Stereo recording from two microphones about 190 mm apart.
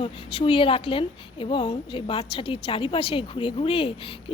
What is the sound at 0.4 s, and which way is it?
A woman's voice, 25° left (ahead or behind).